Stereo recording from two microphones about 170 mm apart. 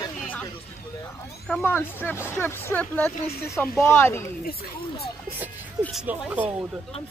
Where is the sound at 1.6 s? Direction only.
10° left (ahead or behind).